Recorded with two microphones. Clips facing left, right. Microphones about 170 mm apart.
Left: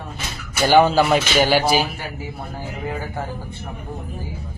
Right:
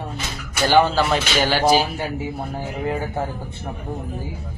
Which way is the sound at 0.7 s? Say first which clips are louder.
Left 2 dB; 10° left (ahead or behind).